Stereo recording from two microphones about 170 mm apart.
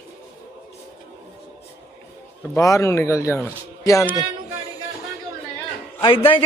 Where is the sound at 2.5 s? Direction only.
15° left (ahead or behind).